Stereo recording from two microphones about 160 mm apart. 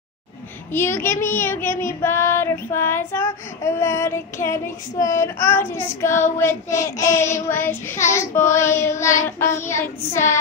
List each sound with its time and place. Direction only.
0.7 s child singing: 15° left (ahead or behind)